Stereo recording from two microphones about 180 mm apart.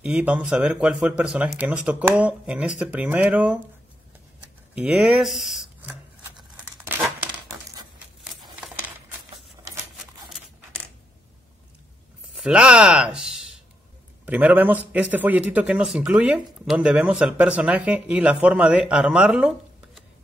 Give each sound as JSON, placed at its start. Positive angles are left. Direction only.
{"t": 0.0, "sound": "a man's voice", "side_deg": -5}
{"t": 4.7, "sound": "speech", "side_deg": -5}
{"t": 12.4, "sound": "a man's voice", "side_deg": -5}